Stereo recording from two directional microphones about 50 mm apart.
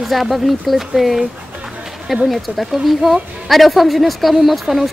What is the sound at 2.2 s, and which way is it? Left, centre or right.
Speech, centre.